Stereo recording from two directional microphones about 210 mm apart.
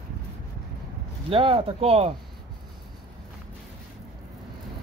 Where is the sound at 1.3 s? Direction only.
25° right (ahead or behind).